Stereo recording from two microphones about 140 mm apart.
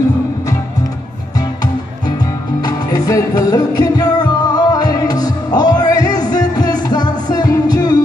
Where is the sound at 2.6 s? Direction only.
25° left (ahead or behind).